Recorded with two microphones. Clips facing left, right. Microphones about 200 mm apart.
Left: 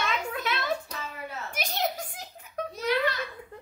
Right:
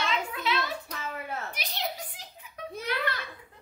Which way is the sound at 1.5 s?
45° left (ahead or behind).